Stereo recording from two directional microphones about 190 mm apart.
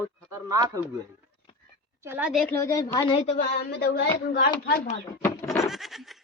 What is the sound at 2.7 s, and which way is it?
Speech, 15° left (ahead or behind).